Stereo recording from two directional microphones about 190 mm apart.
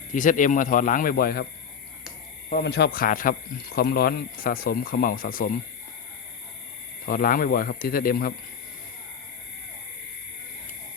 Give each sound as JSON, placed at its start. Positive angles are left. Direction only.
{"t": 0.1, "sound": "speech", "side_deg": 45}
{"t": 2.5, "sound": "speech", "side_deg": 55}
{"t": 7.0, "sound": "speech", "side_deg": 45}